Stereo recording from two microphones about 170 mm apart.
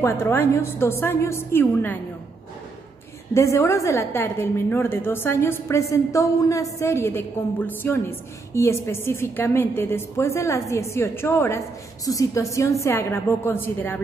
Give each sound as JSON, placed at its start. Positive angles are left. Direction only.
{"t": 0.0, "sound": "a woman's voice", "side_deg": 15}
{"t": 3.3, "sound": "a woman's voice", "side_deg": 15}